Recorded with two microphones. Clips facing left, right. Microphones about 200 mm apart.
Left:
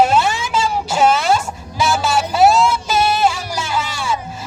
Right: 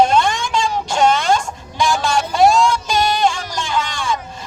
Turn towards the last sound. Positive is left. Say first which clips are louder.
# even
turn(degrees=5)  # may be behind; listen again after turning